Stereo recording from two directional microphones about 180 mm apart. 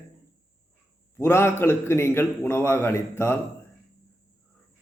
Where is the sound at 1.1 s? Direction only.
15° left (ahead or behind).